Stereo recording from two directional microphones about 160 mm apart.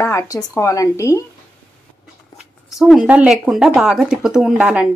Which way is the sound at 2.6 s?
Centre (ahead or behind).